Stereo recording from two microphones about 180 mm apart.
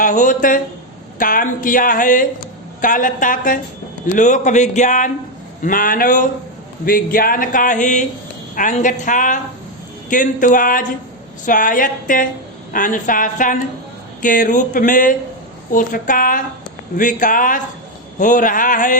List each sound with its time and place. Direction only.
0.0 s speech: 45° left (ahead or behind)